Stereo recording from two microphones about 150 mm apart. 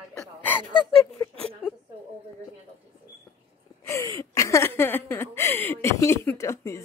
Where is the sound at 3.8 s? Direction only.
20° left (ahead or behind).